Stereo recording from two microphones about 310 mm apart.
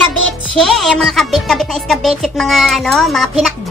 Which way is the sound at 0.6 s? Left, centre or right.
Centre.